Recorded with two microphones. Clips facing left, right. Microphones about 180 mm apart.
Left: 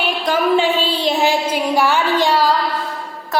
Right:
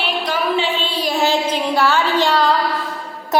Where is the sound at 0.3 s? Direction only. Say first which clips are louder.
Left 6 dB; 45° left (ahead or behind).